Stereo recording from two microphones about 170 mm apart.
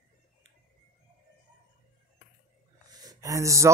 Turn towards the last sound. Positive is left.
turn(degrees=-15)  # may be behind; listen again after turning